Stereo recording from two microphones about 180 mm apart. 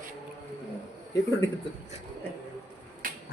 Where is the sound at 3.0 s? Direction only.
50° right (ahead or behind).